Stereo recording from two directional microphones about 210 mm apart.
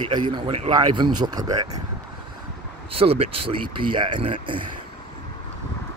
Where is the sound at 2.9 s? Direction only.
25° right (ahead or behind).